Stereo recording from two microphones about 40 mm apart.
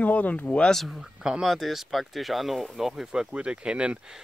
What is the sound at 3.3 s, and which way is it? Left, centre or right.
Speech, right.